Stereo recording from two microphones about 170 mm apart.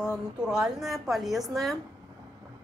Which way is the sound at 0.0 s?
5° right (ahead or behind).